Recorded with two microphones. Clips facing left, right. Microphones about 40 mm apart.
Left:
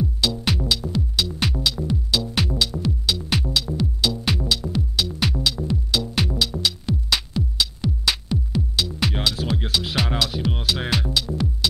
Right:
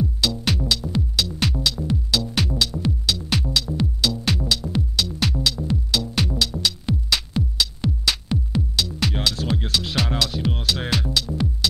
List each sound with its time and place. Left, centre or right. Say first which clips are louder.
0.0 s music: even; centre
7.3 s music: right 1 dB; right
8.7 s music: left 1 dB; centre